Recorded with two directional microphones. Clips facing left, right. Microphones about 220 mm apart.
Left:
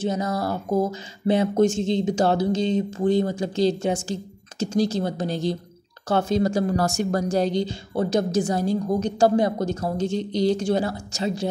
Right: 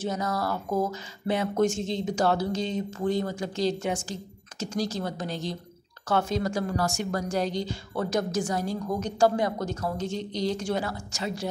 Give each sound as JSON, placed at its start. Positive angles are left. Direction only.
{"t": 0.0, "sound": "speech", "side_deg": 25}